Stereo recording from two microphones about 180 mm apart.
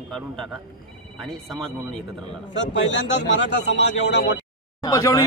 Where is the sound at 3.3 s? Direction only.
75° left (ahead or behind).